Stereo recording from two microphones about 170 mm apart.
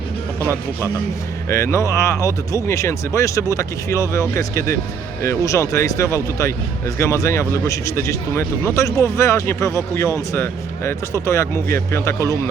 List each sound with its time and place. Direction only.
1.5 s speech: 15° left (ahead or behind)